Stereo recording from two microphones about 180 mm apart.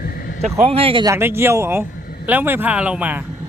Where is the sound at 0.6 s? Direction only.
35° right (ahead or behind).